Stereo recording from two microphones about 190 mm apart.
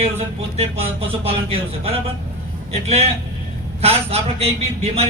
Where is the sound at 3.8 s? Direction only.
30° right (ahead or behind).